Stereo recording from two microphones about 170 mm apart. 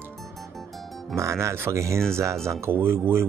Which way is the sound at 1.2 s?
15° right (ahead or behind).